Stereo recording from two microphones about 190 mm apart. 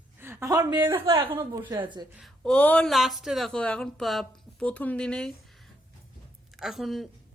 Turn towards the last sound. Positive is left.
turn(degrees=0)  # may be behind; listen again after turning